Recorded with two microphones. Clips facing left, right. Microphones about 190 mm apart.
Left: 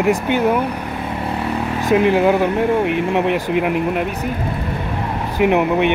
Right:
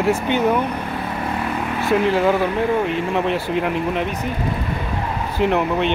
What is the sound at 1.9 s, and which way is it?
Speech, 15° left (ahead or behind).